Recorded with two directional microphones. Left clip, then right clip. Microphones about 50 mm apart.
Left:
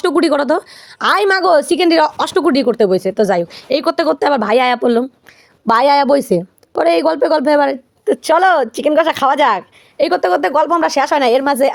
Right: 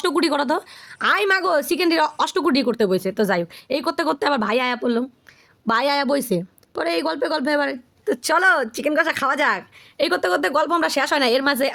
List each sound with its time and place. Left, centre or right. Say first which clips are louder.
0.0 s speech: left 7 dB; left
0.9 s speech: left 6 dB; left
1.2 s a woman's voice: left 7 dB; left
2.4 s speech: left 8 dB; left
3.5 s speech: left 8 dB; left
3.8 s speech: left 7 dB; centre
4.2 s speech: left 7 dB; centre
4.4 s speech: left 9 dB; left
5.6 s a woman's voice: left 9 dB; left
8.0 s speech: left 7 dB; centre
8.4 s speech: left 3 dB; left
10.1 s speech: left 6 dB; centre